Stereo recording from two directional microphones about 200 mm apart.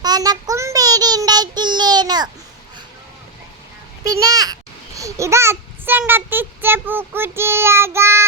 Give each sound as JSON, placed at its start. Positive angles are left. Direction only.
{"t": 0.0, "sound": "child singing", "side_deg": -20}
{"t": 4.0, "sound": "a child's voice", "side_deg": -15}